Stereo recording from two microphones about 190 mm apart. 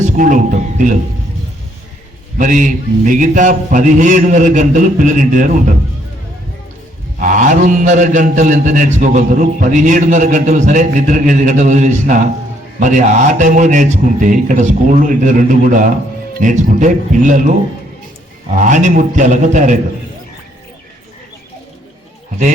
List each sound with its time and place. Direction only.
0.0 s speech: 40° right (ahead or behind)
2.4 s a man's voice: 40° right (ahead or behind)
7.2 s a man's voice: 40° right (ahead or behind)
18.6 s a man's voice: 40° right (ahead or behind)